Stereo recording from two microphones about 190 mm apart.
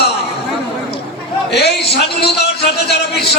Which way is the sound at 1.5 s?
60° left (ahead or behind).